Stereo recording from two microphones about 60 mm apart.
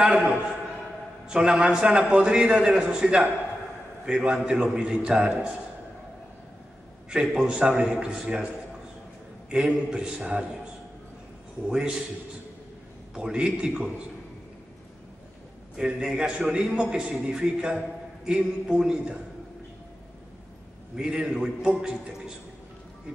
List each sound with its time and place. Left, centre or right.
0.0 s a man's voice: centre
7.1 s a man's voice: centre
9.5 s a man's voice: centre
11.6 s a man's voice: centre
13.1 s a man's voice: centre
15.7 s a man's voice: centre
20.9 s a man's voice: centre